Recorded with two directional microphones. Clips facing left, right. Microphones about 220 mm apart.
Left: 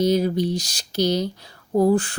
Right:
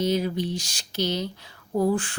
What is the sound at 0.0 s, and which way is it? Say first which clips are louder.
A woman's voice: left 5 dB; 40° left (ahead or behind).